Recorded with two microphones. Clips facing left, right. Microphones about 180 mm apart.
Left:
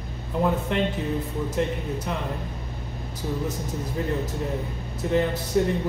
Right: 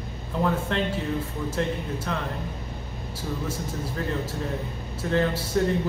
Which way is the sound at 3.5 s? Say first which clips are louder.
Left 1 dB; 20° left (ahead or behind).